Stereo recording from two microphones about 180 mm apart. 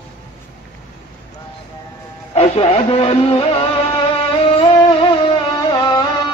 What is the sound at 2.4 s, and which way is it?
Music, 35° left (ahead or behind).